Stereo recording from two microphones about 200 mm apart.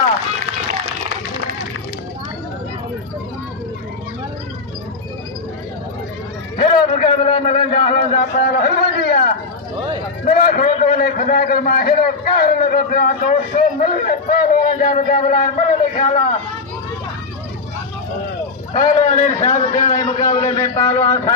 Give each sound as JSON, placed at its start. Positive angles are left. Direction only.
{"t": 6.6, "sound": "a sound", "side_deg": 25}
{"t": 7.8, "sound": "a man's voice", "side_deg": 25}
{"t": 8.2, "sound": "a sound", "side_deg": 55}
{"t": 10.2, "sound": "a man's voice", "side_deg": 45}
{"t": 18.7, "sound": "a man's voice", "side_deg": 40}
{"t": 20.7, "sound": "a man's voice", "side_deg": 15}